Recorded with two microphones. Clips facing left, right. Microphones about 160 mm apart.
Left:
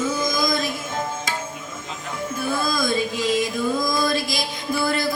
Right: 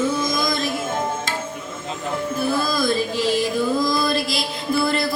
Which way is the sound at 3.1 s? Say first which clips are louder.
Right 2 dB; 30° right (ahead or behind).